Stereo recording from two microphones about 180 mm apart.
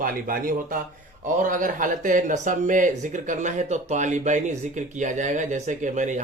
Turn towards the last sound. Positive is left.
turn(degrees=-45)  # may be behind; listen again after turning